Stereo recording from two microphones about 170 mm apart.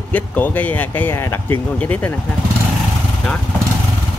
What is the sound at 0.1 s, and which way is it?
Speech, 10° left (ahead or behind).